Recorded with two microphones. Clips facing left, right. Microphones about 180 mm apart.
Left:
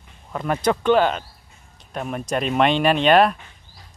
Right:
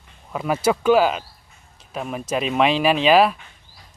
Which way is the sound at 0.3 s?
5° right (ahead or behind).